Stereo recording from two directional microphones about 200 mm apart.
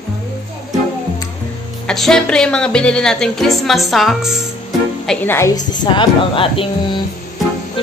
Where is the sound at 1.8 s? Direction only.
Centre (ahead or behind).